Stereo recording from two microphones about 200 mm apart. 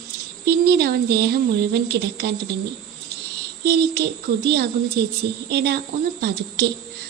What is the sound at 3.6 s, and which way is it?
A woman's voice, 55° right (ahead or behind).